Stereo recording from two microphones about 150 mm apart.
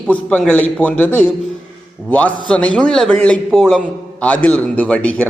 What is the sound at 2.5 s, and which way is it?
A man's voice, 5° left (ahead or behind).